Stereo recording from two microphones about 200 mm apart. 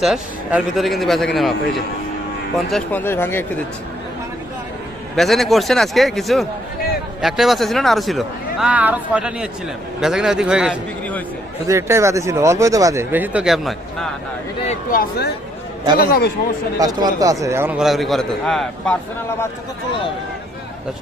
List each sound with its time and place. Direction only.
0.0 s speech: centre (ahead or behind)
2.6 s speech: 5° left (ahead or behind)
5.1 s speech: centre (ahead or behind)
14.7 s speech: 45° left (ahead or behind)
16.7 s speech: 20° right (ahead or behind); by 18.9 s centre (ahead or behind)